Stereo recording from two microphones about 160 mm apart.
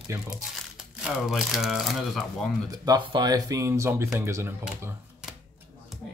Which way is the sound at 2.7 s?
25° right (ahead or behind).